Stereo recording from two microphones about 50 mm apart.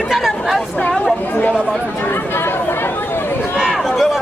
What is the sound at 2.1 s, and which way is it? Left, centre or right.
Chatter, left.